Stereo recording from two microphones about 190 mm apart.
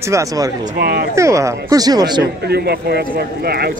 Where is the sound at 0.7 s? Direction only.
55° right (ahead or behind).